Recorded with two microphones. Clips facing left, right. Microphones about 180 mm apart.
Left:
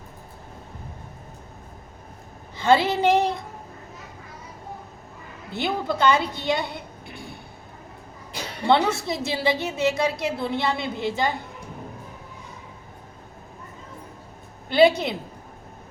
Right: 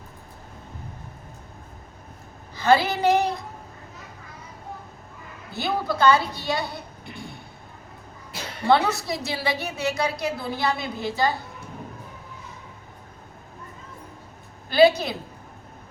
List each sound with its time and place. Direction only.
2.6 s a woman's voice: 25° left (ahead or behind)
5.5 s a woman's voice: 20° left (ahead or behind)
8.7 s a woman's voice: 25° left (ahead or behind)
14.7 s a woman's voice: 25° left (ahead or behind)